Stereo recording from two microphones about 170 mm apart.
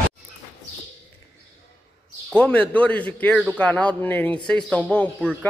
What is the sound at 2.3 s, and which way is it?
Speech, 5° left (ahead or behind).